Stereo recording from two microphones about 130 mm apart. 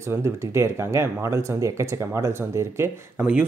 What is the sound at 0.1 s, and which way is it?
Speech, 20° right (ahead or behind).